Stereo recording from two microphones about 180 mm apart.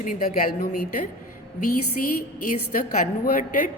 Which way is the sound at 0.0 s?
50° left (ahead or behind).